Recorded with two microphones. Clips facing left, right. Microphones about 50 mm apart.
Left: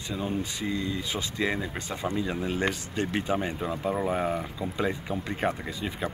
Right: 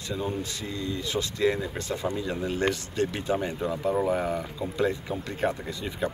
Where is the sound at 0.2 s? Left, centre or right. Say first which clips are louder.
Left 3 dB; centre.